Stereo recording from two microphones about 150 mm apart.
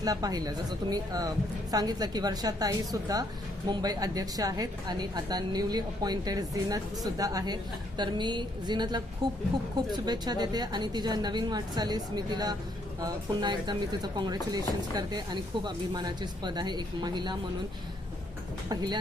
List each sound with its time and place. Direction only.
0.0 s a woman's voice: 25° right (ahead or behind)
18.7 s a woman's voice: 25° right (ahead or behind)